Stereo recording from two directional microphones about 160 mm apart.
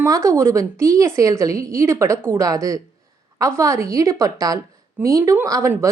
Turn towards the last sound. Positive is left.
turn(degrees=-15)  # may be behind; listen again after turning